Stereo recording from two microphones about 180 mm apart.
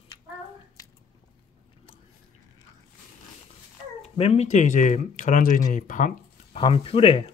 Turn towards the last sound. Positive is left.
turn(degrees=30)  # may be behind; listen again after turning